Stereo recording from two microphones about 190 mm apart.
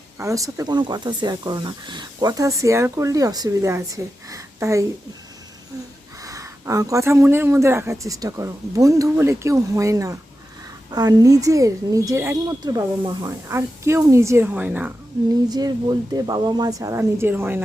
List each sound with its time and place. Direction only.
0.2 s speech: 15° right (ahead or behind)
6.2 s speech: 15° right (ahead or behind)
15.4 s speech: 20° right (ahead or behind)